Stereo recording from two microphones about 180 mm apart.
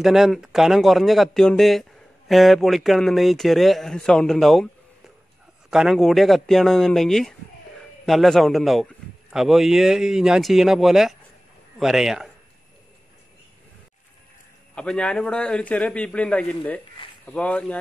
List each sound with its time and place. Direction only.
0.0 s speech: centre (ahead or behind)
5.7 s speech: 5° right (ahead or behind)
14.8 s speech: 5° left (ahead or behind)